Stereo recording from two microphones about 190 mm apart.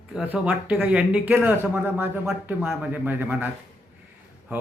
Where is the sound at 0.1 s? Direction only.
5° right (ahead or behind).